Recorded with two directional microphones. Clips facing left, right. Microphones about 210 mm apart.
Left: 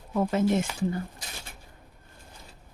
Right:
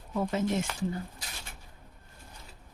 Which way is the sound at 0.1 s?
60° left (ahead or behind).